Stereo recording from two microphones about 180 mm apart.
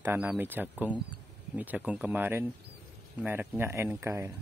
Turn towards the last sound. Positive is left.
turn(degrees=-15)  # may be behind; listen again after turning